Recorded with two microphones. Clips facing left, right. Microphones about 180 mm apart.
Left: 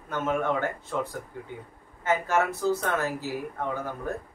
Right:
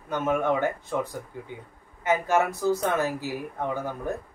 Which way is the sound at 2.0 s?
15° right (ahead or behind).